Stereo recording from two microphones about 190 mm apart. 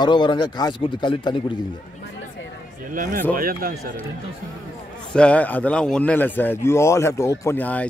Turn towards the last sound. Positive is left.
turn(degrees=10)  # may be behind; listen again after turning